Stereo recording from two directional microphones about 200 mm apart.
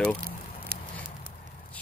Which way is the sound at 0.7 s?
50° right (ahead or behind).